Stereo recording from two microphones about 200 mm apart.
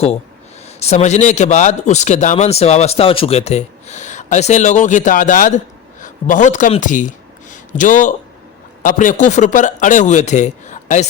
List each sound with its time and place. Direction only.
0.8 s a man's voice: 30° left (ahead or behind)
7.5 s a sound: 40° left (ahead or behind)
8.8 s a man's voice: 40° left (ahead or behind)